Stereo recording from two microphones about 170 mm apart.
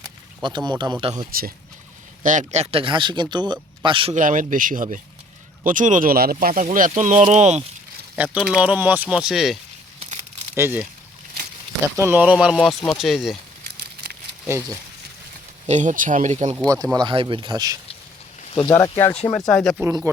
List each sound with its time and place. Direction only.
0.4 s speech: 25° right (ahead or behind)
2.2 s speech: 45° right (ahead or behind); by 4.1 s 30° right (ahead or behind)
4.1 s speech: 50° right (ahead or behind)
8.2 s speech: 5° right (ahead or behind)
10.5 s speech: 15° right (ahead or behind)
11.9 s speech: 10° right (ahead or behind)
13.7 s a sound: 65° right (ahead or behind)
15.6 s speech: 45° right (ahead or behind)
16.6 s speech: 20° right (ahead or behind)
18.6 s speech: 20° left (ahead or behind)
19.5 s speech: centre (ahead or behind)